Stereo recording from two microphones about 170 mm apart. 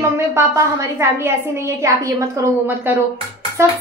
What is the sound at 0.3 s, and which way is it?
A woman's voice, 15° right (ahead or behind).